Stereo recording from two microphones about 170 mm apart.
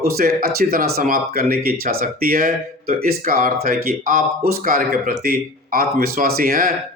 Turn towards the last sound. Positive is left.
turn(degrees=-60)  # may be behind; listen again after turning